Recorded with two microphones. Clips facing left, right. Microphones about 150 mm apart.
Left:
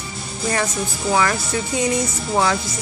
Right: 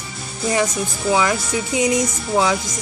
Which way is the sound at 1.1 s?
15° right (ahead or behind).